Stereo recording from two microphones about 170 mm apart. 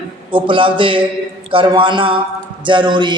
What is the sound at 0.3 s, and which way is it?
A man's voice, 30° right (ahead or behind).